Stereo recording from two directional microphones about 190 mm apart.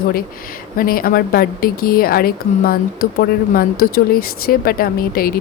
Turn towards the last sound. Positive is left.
turn(degrees=50)  # may be behind; listen again after turning